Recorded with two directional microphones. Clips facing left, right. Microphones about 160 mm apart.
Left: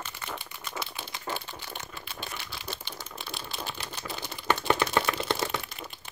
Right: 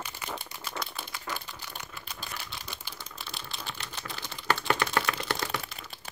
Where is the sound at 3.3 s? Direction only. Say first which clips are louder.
Left 4 dB; centre (ahead or behind).